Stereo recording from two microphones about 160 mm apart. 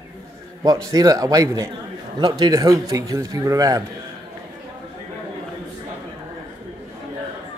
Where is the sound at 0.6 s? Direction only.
20° right (ahead or behind).